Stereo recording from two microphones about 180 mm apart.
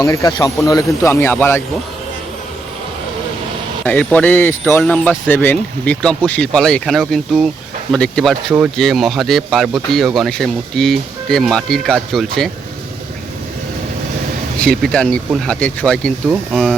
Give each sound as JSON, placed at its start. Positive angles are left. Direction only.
{"t": 0.0, "sound": "speech", "side_deg": 20}
{"t": 3.8, "sound": "speech", "side_deg": 10}
{"t": 14.6, "sound": "speech", "side_deg": 5}